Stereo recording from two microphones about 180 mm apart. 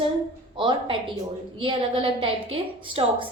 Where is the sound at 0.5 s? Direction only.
30° right (ahead or behind).